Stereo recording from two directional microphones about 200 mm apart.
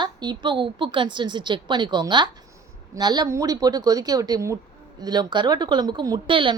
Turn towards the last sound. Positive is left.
turn(degrees=-25)  # may be behind; listen again after turning